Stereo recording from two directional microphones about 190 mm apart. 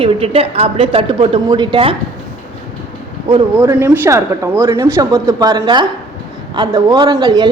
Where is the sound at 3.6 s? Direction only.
15° right (ahead or behind).